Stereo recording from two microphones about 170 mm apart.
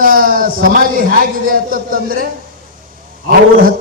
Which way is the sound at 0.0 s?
55° right (ahead or behind).